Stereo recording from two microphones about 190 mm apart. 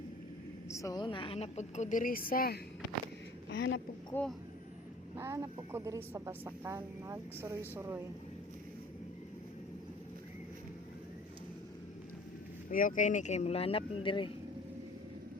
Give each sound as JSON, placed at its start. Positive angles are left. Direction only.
{"t": 0.7, "sound": "a woman's voice", "side_deg": 15}
{"t": 3.5, "sound": "a woman's voice", "side_deg": 65}
{"t": 4.1, "sound": "speech", "side_deg": 5}
{"t": 5.1, "sound": "speech", "side_deg": -15}
{"t": 12.7, "sound": "a woman's voice", "side_deg": 45}